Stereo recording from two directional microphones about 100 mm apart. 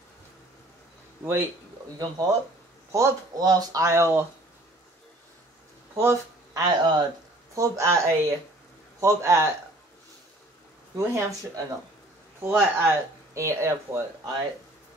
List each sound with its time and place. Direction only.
1.2 s speech: 20° right (ahead or behind)
2.0 s speech: 40° right (ahead or behind)
5.9 s speech: 35° right (ahead or behind)
7.5 s speech: 30° right (ahead or behind)
11.0 s speech: 30° right (ahead or behind)
12.4 s speech: 20° right (ahead or behind)